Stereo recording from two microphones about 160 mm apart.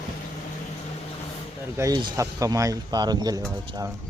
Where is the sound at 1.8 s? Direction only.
20° right (ahead or behind).